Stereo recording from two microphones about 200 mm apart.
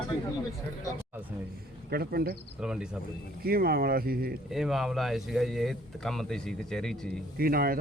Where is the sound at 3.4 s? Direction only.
50° right (ahead or behind).